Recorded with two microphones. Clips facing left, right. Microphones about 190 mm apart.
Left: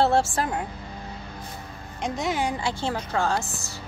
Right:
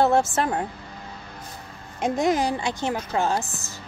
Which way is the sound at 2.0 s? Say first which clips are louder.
Right 5 dB; 50° right (ahead or behind).